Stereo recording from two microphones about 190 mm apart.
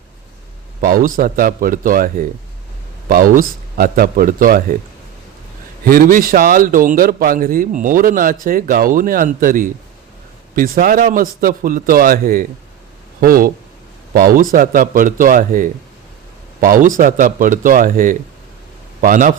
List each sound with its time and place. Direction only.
0.8 s a man's voice: 45° right (ahead or behind)
5.8 s a man's voice: 45° right (ahead or behind)